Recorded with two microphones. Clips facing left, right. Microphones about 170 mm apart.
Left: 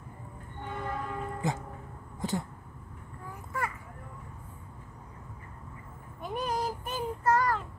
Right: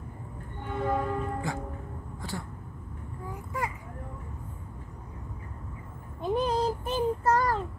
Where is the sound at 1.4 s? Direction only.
20° left (ahead or behind).